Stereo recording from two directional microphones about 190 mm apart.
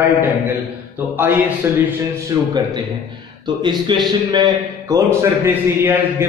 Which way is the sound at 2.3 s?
20° right (ahead or behind).